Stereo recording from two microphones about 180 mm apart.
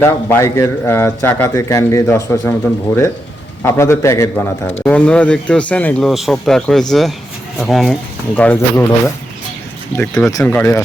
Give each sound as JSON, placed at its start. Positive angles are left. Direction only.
{"t": 0.0, "sound": "a man's voice", "side_deg": 15}